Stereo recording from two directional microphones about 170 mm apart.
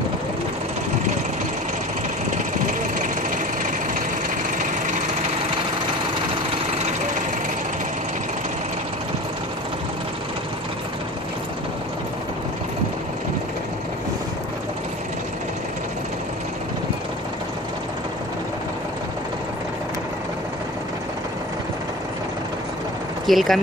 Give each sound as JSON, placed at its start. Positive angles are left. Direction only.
{"t": 2.6, "sound": "engine", "side_deg": -50}
{"t": 23.2, "sound": "speech", "side_deg": 0}